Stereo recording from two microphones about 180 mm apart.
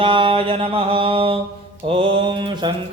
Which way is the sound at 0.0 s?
30° right (ahead or behind).